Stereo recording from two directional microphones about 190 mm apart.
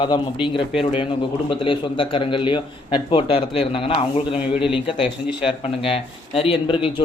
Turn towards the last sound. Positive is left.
turn(degrees=25)  # may be behind; listen again after turning